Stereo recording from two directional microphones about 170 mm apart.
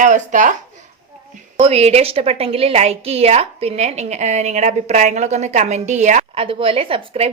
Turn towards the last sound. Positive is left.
turn(degrees=-35)  # may be behind; listen again after turning